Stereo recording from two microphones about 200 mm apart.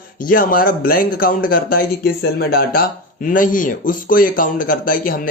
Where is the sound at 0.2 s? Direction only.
45° left (ahead or behind).